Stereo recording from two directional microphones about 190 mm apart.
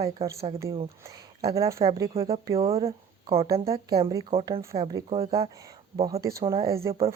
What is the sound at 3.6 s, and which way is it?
Speech, 20° right (ahead or behind).